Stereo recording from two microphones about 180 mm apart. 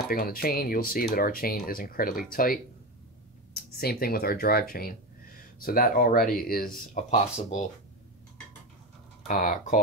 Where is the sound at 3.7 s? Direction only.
55° left (ahead or behind).